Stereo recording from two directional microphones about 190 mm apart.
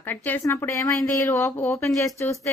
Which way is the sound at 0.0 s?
10° left (ahead or behind).